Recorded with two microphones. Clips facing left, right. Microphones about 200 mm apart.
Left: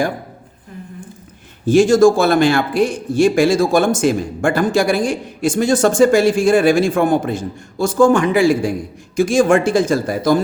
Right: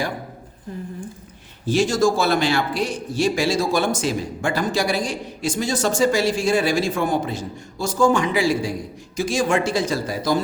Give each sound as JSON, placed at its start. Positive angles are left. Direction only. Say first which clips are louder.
{"t": 1.6, "sound": "a man's voice", "louder": "left 8 dB", "side_deg": 50}